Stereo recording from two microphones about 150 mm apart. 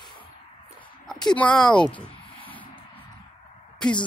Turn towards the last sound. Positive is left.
turn(degrees=5)  # may be behind; listen again after turning